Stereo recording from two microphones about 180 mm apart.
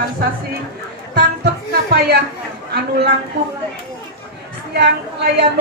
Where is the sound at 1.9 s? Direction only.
65° right (ahead or behind).